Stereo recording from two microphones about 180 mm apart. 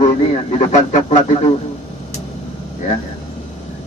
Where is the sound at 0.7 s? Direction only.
40° left (ahead or behind).